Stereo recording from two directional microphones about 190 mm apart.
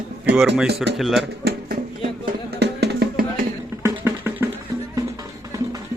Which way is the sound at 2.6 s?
60° right (ahead or behind).